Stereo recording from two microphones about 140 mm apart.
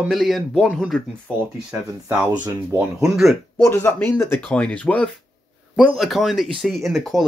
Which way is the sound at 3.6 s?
20° left (ahead or behind).